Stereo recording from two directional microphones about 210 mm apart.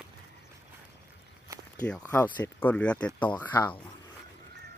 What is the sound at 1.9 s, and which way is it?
Speech, 10° left (ahead or behind).